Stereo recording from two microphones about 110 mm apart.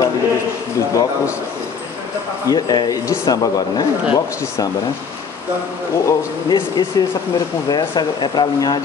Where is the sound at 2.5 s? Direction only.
35° left (ahead or behind).